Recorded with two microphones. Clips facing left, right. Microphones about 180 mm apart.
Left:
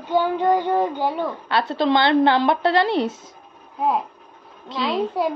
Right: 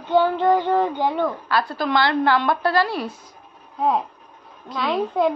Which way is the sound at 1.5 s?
25° left (ahead or behind).